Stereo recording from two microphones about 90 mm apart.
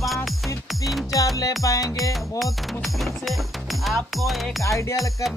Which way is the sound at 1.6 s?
45° left (ahead or behind).